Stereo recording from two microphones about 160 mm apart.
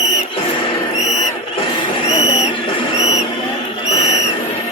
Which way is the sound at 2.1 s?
40° left (ahead or behind).